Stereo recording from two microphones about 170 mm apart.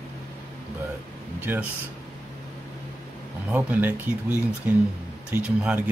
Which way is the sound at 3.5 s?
10° right (ahead or behind).